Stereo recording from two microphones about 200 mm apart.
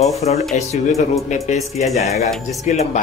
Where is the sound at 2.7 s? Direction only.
40° left (ahead or behind).